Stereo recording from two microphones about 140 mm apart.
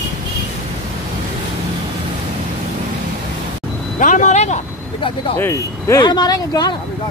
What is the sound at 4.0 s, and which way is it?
Vehicle, 65° left (ahead or behind).